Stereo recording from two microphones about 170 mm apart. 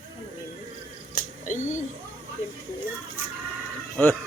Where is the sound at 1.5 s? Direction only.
45° left (ahead or behind).